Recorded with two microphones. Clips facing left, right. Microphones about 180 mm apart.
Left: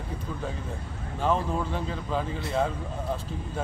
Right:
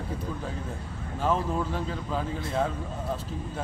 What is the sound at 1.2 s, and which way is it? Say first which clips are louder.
Speech: even; centre (ahead or behind).